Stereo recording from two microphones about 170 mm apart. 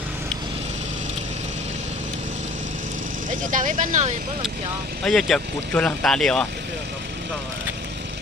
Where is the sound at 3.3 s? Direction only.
50° right (ahead or behind).